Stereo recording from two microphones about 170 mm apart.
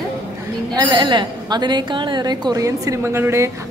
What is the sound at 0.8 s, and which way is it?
A woman's voice, 25° right (ahead or behind).